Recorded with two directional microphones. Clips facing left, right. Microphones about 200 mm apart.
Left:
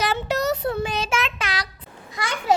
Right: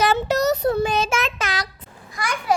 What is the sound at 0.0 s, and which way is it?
Child singing, 45° right (ahead or behind).